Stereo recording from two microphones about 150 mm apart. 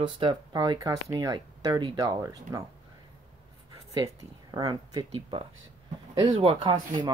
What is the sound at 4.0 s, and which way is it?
Speech, 25° right (ahead or behind).